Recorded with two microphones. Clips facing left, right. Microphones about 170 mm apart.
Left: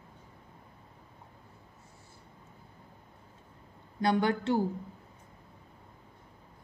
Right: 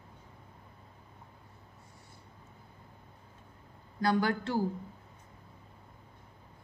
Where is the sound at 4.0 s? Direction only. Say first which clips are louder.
Left 1 dB; 25° left (ahead or behind).